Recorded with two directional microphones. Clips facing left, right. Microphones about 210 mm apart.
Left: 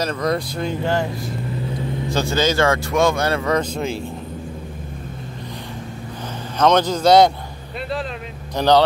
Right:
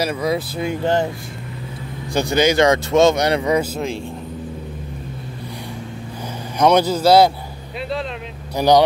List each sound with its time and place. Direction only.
0.0 s speech: 10° right (ahead or behind)
2.0 s speech: 15° right (ahead or behind)
6.6 s speech: 10° right (ahead or behind)
8.5 s speech: 10° right (ahead or behind)